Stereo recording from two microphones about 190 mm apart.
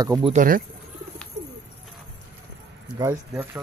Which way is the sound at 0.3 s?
45° right (ahead or behind).